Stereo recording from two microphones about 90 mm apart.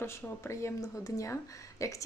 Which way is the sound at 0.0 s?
30° left (ahead or behind).